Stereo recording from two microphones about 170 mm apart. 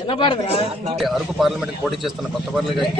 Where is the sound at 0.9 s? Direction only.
Centre (ahead or behind).